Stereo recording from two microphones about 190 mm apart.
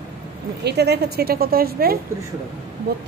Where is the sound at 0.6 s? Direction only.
60° right (ahead or behind).